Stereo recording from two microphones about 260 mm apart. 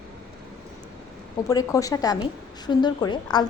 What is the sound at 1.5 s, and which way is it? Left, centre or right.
A woman's voice, centre.